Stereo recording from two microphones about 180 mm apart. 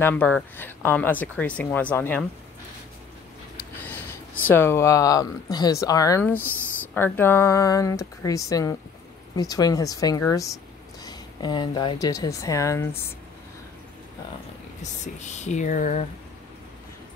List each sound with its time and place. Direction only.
0.0 s speech: 10° left (ahead or behind)
3.8 s a woman's voice: 10° left (ahead or behind)
14.8 s speech: 40° left (ahead or behind)